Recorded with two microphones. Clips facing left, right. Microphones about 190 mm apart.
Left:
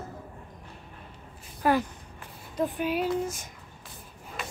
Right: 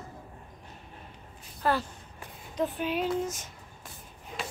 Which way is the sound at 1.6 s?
10° left (ahead or behind).